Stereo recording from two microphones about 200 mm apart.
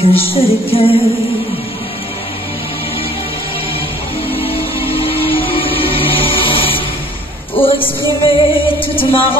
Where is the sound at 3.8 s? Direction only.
25° left (ahead or behind).